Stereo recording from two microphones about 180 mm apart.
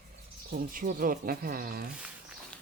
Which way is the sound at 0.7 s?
50° right (ahead or behind).